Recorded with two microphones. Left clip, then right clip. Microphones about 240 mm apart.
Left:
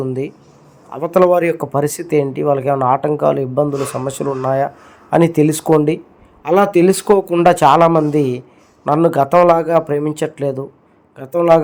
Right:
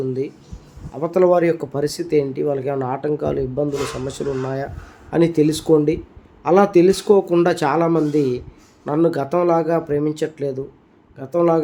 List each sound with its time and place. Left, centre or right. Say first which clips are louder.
0.9 s speech: left 3 dB; centre